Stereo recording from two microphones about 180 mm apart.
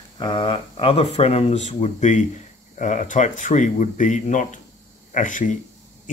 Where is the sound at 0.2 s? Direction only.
25° left (ahead or behind).